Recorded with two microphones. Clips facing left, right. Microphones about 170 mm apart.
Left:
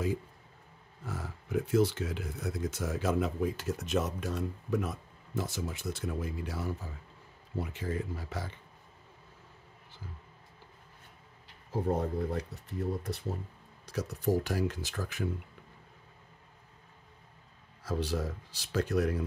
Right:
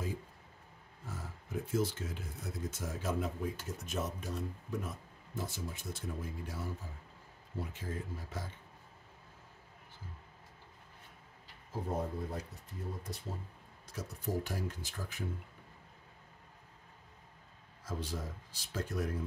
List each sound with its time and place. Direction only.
1.0 s speech: 75° left (ahead or behind)
12.0 s speech: 70° left (ahead or behind)
17.8 s speech: 75° left (ahead or behind)